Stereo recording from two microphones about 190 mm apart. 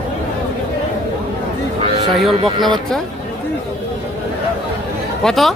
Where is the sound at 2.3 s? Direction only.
25° right (ahead or behind).